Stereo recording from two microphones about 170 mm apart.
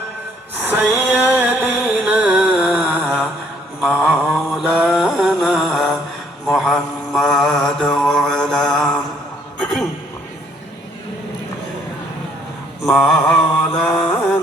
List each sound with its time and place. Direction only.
0.6 s music: 5° right (ahead or behind)
3.8 s mantra: 5° right (ahead or behind)
9.6 s a sound: centre (ahead or behind)
12.8 s mantra: centre (ahead or behind)